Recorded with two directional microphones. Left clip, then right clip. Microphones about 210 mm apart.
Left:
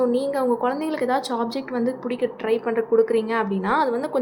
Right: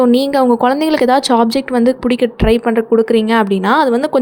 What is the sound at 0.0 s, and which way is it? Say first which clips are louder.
A woman's voice: right 10 dB; 45° right (ahead or behind).